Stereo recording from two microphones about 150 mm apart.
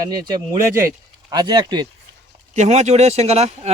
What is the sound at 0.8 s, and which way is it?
Speech, 20° right (ahead or behind).